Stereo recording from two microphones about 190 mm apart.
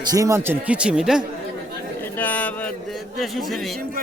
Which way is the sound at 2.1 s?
10° left (ahead or behind).